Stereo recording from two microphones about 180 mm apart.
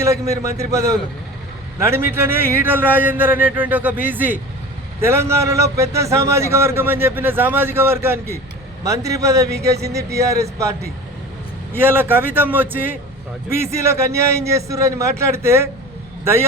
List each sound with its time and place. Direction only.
0.0 s a man's voice: 15° right (ahead or behind)